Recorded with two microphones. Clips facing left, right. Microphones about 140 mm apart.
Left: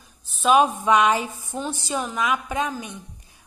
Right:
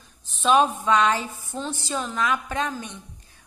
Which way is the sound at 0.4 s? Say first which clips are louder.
Left 2 dB; 10° left (ahead or behind).